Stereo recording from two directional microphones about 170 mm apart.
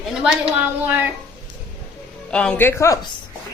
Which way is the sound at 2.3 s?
5° left (ahead or behind).